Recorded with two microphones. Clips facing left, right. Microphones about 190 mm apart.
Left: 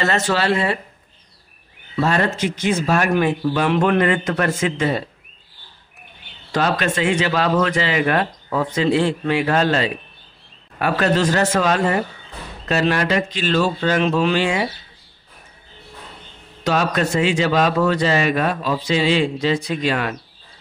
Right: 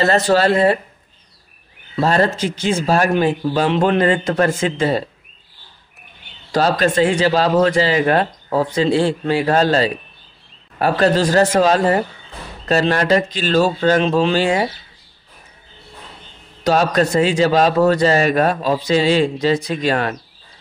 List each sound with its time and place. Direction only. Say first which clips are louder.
0.0 s a man's voice: right 5 dB; 35° right (ahead or behind)
2.0 s a man's voice: right 3 dB; 35° right (ahead or behind)
6.5 s a man's voice: right 4 dB; 35° right (ahead or behind)
16.6 s a man's voice: right 4 dB; 40° right (ahead or behind)